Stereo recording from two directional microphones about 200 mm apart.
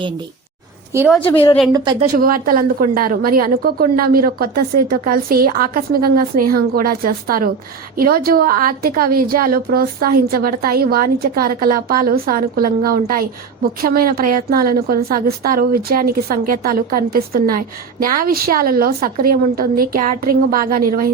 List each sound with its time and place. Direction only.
0.9 s a woman's voice: 5° right (ahead or behind)
1.3 s a woman's voice: 25° left (ahead or behind)
1.7 s speech: 20° right (ahead or behind)
2.1 s a woman's voice: 45° right (ahead or behind)